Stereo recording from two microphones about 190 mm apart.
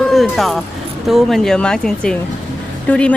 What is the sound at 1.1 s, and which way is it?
Speech, centre (ahead or behind).